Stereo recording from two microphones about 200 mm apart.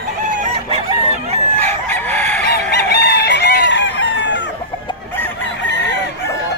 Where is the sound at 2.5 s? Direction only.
55° left (ahead or behind).